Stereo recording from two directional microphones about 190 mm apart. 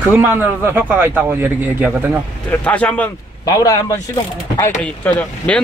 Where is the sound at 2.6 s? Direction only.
5° left (ahead or behind).